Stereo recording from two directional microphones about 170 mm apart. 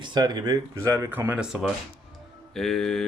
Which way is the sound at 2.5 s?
Centre (ahead or behind).